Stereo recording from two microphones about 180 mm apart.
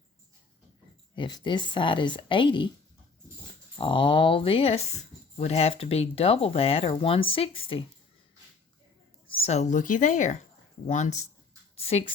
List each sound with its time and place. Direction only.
1.1 s a woman's voice: 25° left (ahead or behind)
3.8 s a woman's voice: 30° left (ahead or behind)
9.3 s a woman's voice: 35° left (ahead or behind)
11.8 s speech: 35° left (ahead or behind)